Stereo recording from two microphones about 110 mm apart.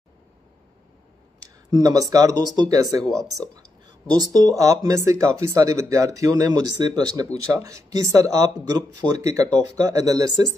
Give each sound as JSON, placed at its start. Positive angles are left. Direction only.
{"t": 1.7, "sound": "speech", "side_deg": -35}